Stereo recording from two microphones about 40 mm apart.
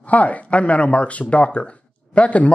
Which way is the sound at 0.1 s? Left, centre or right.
Left.